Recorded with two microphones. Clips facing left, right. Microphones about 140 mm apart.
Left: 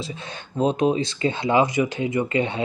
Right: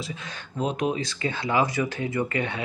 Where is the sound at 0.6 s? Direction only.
30° left (ahead or behind).